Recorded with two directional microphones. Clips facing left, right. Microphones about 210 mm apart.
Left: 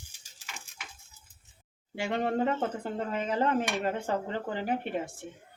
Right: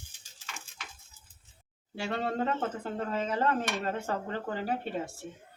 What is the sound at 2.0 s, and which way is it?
Speech, 15° left (ahead or behind).